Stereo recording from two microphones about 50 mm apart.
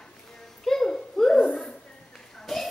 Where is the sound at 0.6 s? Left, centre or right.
Centre.